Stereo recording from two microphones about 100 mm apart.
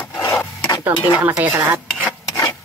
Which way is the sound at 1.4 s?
15° right (ahead or behind).